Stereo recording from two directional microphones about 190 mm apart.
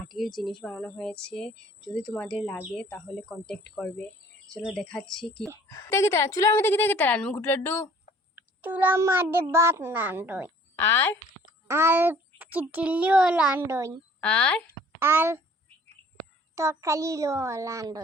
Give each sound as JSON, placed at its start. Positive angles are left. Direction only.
{"t": 0.1, "sound": "speech", "side_deg": 0}
{"t": 5.6, "sound": "a woman's voice", "side_deg": 15}
{"t": 8.4, "sound": "a child's voice", "side_deg": -10}
{"t": 10.8, "sound": "a woman's voice", "side_deg": 10}
{"t": 11.7, "sound": "a child's voice", "side_deg": -15}
{"t": 14.2, "sound": "speech", "side_deg": 5}
{"t": 14.9, "sound": "a woman's voice", "side_deg": -10}
{"t": 16.6, "sound": "a child's voice", "side_deg": -15}